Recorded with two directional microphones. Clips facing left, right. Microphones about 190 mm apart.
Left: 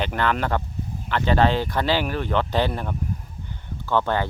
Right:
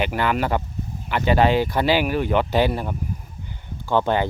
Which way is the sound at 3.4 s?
15° right (ahead or behind).